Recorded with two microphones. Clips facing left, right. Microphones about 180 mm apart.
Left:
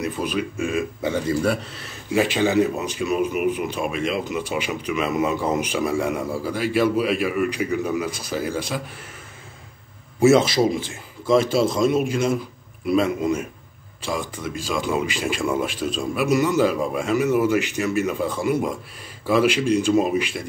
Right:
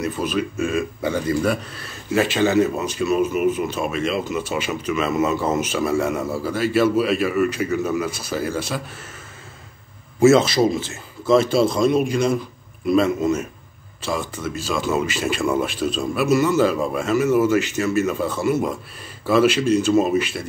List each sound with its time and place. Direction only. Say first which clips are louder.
0.0 s speech: right 2 dB; 15° left (ahead or behind)
2.1 s speech: right 1 dB; 15° left (ahead or behind)
10.2 s speech: right 2 dB; 10° left (ahead or behind)